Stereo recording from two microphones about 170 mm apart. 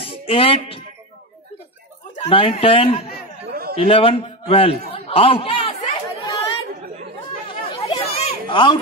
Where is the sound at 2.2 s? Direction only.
35° left (ahead or behind).